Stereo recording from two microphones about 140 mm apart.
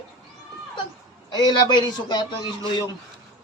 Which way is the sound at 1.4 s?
30° left (ahead or behind).